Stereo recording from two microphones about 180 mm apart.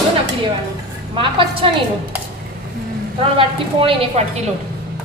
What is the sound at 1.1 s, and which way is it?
Speech, 30° right (ahead or behind).